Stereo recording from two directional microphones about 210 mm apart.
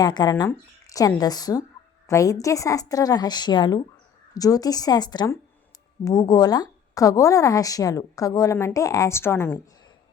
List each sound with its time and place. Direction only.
0.0 s a woman's voice: 20° left (ahead or behind)